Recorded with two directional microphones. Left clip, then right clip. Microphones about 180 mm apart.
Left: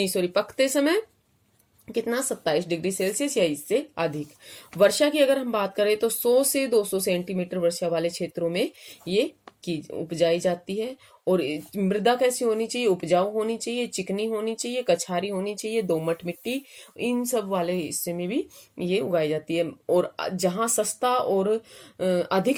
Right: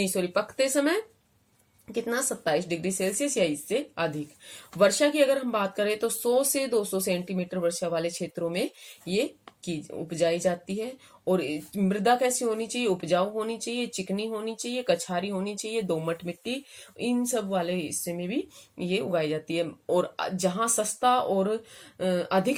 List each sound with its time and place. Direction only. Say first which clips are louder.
0.0 s speech: left 3 dB; 40° left (ahead or behind)